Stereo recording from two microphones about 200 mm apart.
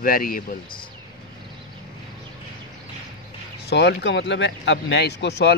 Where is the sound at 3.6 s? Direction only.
55° left (ahead or behind).